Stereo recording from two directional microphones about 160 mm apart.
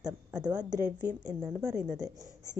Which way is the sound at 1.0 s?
10° right (ahead or behind).